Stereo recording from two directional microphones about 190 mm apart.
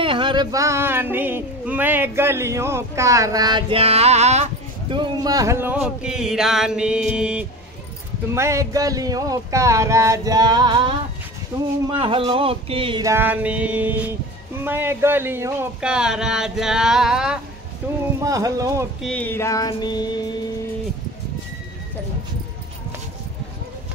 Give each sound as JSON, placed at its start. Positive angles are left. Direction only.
{"t": 0.0, "sound": "speech", "side_deg": -25}
{"t": 8.4, "sound": "speech", "side_deg": -15}
{"t": 11.5, "sound": "a sound", "side_deg": -25}
{"t": 13.0, "sound": "speech", "side_deg": -10}
{"t": 18.9, "sound": "music", "side_deg": 5}